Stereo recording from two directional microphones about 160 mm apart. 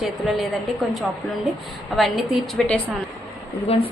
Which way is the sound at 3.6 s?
40° left (ahead or behind).